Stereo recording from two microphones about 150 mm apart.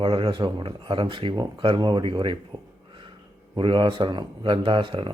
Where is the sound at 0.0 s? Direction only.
35° right (ahead or behind).